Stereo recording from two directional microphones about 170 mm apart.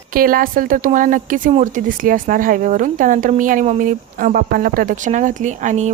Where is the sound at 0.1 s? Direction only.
55° right (ahead or behind).